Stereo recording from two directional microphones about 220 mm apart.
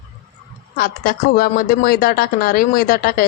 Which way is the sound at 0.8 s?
40° left (ahead or behind).